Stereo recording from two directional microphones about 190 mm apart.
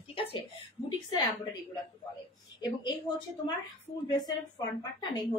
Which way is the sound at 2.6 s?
25° left (ahead or behind).